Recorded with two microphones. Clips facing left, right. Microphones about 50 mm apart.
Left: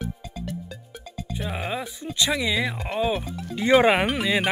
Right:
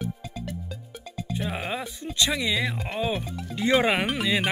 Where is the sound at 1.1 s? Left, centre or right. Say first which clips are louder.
Right 1 dB; centre.